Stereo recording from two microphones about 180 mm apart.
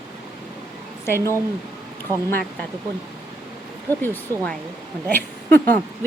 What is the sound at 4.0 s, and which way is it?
Speech, 10° left (ahead or behind).